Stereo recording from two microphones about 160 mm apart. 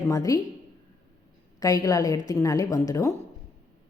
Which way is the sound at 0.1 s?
20° left (ahead or behind).